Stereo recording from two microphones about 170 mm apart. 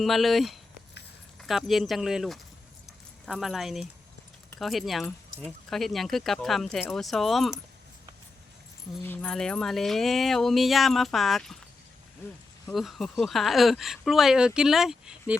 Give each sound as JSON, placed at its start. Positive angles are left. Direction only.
{"t": 0.0, "sound": "speech", "side_deg": 0}
{"t": 9.0, "sound": "speech", "side_deg": 5}
{"t": 12.6, "sound": "speech", "side_deg": 0}